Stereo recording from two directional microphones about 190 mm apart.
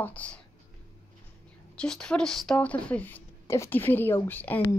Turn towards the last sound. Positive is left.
turn(degrees=10)  # may be behind; listen again after turning